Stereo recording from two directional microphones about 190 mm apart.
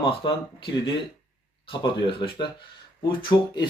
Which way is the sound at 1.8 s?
25° left (ahead or behind).